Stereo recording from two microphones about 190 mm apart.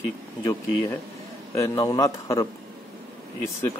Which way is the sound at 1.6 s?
20° left (ahead or behind).